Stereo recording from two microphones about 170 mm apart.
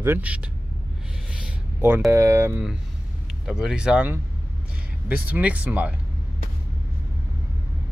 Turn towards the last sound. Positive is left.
turn(degrees=-10)  # may be behind; listen again after turning